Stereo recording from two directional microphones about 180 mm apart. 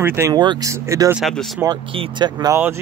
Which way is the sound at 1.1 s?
Centre (ahead or behind).